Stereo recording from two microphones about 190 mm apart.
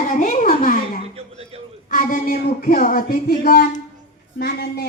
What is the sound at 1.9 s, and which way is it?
Speech, 45° left (ahead or behind).